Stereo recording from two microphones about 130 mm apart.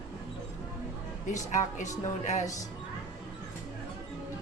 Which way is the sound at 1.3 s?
70° left (ahead or behind).